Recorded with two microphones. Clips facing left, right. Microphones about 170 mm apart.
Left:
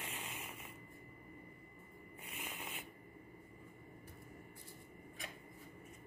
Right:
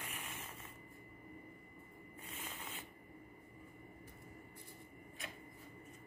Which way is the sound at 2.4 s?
15° left (ahead or behind).